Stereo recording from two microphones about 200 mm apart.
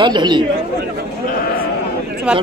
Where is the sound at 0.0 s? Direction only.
20° right (ahead or behind).